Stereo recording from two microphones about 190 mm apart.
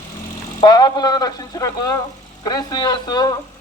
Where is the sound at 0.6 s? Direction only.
20° left (ahead or behind).